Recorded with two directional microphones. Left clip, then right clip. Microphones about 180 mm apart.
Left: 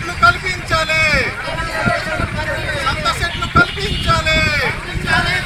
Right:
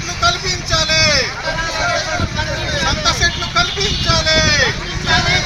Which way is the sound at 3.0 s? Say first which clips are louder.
Right 2 dB; 15° left (ahead or behind).